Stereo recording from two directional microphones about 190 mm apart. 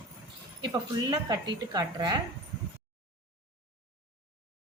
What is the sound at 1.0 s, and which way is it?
A woman's voice, 20° right (ahead or behind).